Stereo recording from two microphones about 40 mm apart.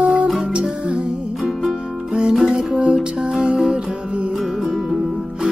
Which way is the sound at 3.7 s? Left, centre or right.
Right.